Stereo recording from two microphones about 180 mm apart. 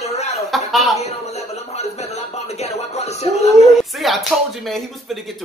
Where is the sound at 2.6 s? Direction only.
35° left (ahead or behind).